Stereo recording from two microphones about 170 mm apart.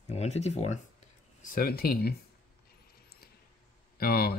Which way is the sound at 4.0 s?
65° left (ahead or behind).